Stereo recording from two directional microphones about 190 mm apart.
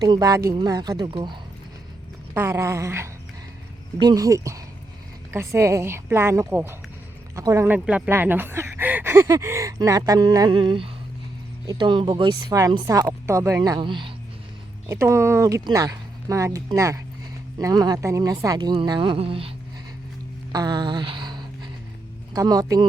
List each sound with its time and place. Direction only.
0.0 s speech: 20° right (ahead or behind)
2.3 s speech: 15° right (ahead or behind)
14.8 s speech: 15° right (ahead or behind)
20.5 s a sound: 20° right (ahead or behind)
22.3 s speech: 20° right (ahead or behind)